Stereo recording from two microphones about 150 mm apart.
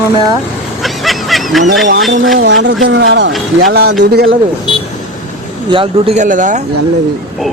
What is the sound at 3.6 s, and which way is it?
Speech, 80° right.